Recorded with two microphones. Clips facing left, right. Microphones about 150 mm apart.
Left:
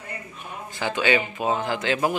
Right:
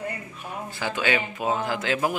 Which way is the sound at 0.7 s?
5° right (ahead or behind).